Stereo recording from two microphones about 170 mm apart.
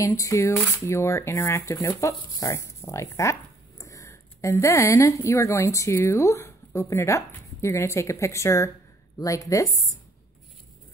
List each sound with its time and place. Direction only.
0.0 s speech: 20° left (ahead or behind)